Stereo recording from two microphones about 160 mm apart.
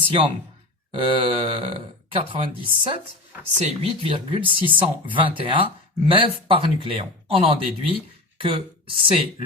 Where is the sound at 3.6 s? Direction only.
40° right (ahead or behind).